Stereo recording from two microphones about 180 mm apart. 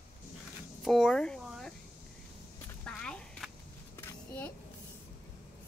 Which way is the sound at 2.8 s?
5° left (ahead or behind).